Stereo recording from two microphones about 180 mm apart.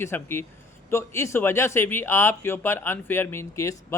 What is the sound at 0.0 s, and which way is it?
A man's voice, 15° left (ahead or behind).